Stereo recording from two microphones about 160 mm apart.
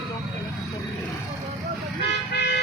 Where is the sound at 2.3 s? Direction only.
90° left.